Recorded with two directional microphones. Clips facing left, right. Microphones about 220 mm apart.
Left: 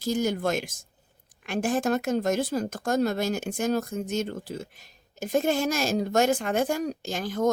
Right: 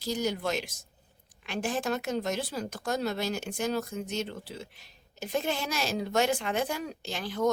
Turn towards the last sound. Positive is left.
turn(degrees=45)  # may be behind; listen again after turning